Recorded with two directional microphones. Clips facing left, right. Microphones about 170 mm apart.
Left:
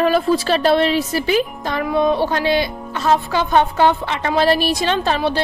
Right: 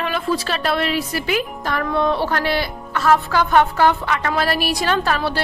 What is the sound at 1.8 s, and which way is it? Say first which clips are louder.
A woman's voice: left 3 dB; 15° left (ahead or behind).